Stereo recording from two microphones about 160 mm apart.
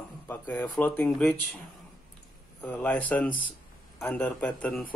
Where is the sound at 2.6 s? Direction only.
10° left (ahead or behind).